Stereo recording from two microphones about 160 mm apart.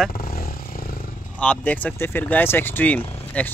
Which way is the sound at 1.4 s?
10° left (ahead or behind).